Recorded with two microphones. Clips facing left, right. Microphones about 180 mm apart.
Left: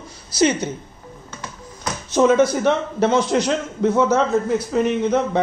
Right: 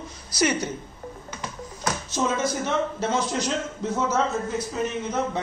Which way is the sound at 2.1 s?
65° left (ahead or behind).